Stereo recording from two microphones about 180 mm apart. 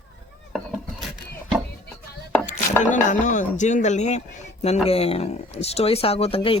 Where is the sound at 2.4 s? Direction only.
45° left (ahead or behind).